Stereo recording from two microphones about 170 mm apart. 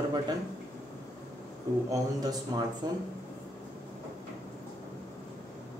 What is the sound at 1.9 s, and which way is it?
A man's voice, 20° right (ahead or behind).